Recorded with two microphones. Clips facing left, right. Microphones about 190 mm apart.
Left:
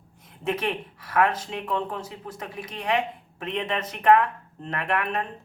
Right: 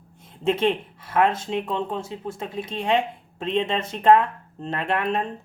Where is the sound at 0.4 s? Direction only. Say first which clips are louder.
Right 6 dB; 25° right (ahead or behind).